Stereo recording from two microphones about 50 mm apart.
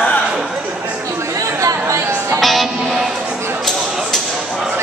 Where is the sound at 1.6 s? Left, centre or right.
Right.